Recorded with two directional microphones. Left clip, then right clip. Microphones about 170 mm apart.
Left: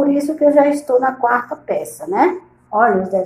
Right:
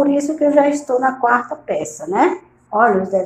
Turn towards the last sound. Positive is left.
turn(degrees=0)  # may be behind; listen again after turning